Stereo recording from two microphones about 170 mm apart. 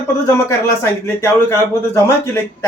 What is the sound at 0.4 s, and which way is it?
A man's voice, 15° left (ahead or behind).